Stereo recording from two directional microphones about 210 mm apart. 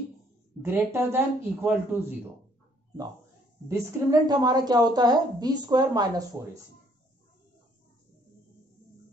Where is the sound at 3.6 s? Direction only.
15° right (ahead or behind).